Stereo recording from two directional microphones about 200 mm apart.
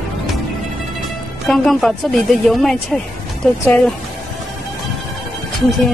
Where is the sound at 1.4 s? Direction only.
Centre (ahead or behind).